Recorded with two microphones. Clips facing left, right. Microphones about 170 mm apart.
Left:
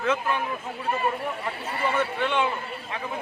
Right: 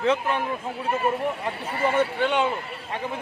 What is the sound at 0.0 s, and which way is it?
Speech, 30° right (ahead or behind).